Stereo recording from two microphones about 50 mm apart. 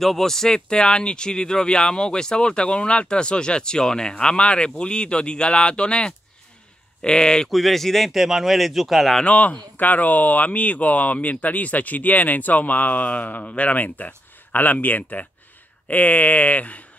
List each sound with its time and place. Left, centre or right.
0.0 s speech: centre
7.4 s speech: centre
9.2 s speech: left